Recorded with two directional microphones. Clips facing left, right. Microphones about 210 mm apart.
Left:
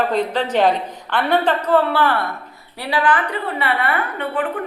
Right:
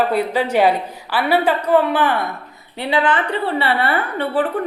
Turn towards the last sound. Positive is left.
turn(degrees=-35)  # may be behind; listen again after turning